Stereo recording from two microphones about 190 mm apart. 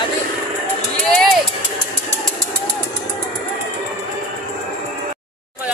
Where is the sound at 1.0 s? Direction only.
Centre (ahead or behind).